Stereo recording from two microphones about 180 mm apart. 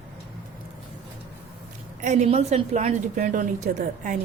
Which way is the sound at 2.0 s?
40° right (ahead or behind).